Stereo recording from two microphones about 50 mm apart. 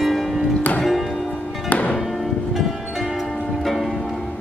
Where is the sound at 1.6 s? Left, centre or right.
Left.